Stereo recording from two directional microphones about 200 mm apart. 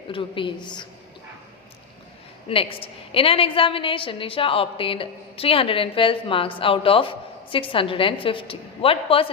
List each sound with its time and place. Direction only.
0.1 s a woman's voice: 25° left (ahead or behind)
2.5 s a woman's voice: 25° left (ahead or behind)